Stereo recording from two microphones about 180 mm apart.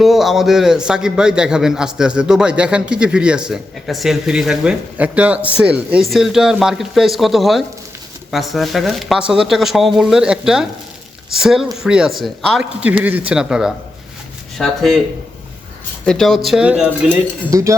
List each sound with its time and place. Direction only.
0.0 s a man's voice: centre (ahead or behind)
16.0 s a man's voice: centre (ahead or behind)
17.5 s speech: 15° right (ahead or behind)